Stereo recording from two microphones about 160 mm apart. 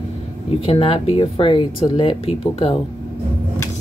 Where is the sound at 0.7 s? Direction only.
35° left (ahead or behind).